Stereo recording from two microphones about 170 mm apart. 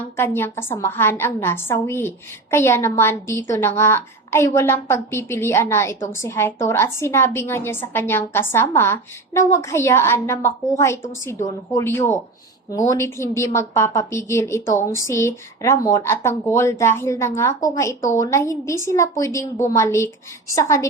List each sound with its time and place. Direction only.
0.0 s a woman's voice: 15° left (ahead or behind)